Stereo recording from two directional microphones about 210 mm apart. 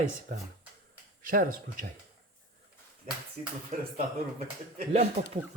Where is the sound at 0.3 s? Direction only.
40° right (ahead or behind).